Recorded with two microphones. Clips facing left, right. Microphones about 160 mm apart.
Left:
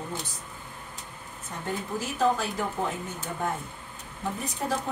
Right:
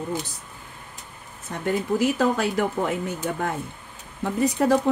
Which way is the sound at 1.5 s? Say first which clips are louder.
Right 9 dB; 75° right (ahead or behind).